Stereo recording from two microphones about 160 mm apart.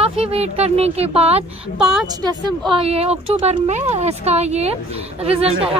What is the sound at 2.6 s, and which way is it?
Speech, 35° right (ahead or behind).